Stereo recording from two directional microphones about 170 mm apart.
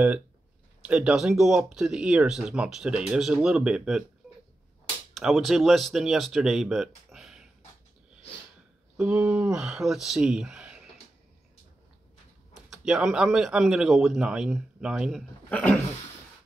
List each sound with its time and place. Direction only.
0.8 s speech: 5° right (ahead or behind)
5.1 s speech: centre (ahead or behind)
8.9 s speech: 10° right (ahead or behind)
12.5 s speech: centre (ahead or behind)
15.5 s speech: 10° left (ahead or behind)